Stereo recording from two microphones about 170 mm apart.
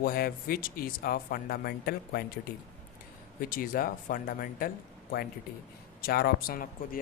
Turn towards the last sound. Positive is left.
turn(degrees=55)  # may be behind; listen again after turning